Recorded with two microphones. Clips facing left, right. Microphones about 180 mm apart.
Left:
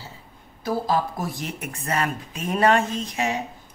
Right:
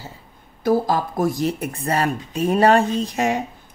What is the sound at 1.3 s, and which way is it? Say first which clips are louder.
Speech: right 9 dB; 35° right (ahead or behind).